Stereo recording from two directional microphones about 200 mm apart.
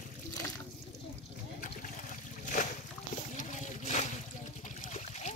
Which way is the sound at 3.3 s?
35° left (ahead or behind).